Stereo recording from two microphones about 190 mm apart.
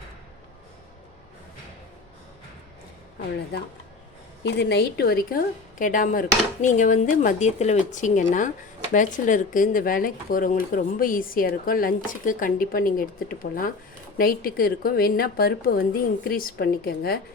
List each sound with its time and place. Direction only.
4.4 s a woman's voice: 65° left (ahead or behind)